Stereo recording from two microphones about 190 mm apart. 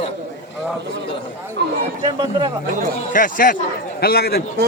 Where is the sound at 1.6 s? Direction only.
65° right (ahead or behind).